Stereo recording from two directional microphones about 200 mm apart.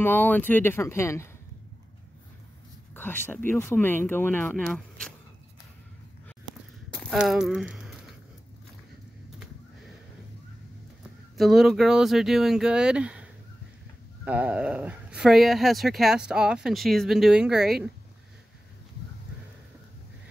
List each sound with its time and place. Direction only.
0.0 s speech: 10° left (ahead or behind)
2.9 s speech: 10° left (ahead or behind)
7.0 s speech: centre (ahead or behind)
11.3 s speech: centre (ahead or behind)